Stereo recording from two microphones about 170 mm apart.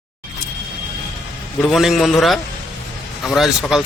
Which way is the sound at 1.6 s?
Centre (ahead or behind).